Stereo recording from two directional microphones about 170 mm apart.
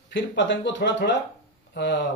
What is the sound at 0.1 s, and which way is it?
Speech, 90° left.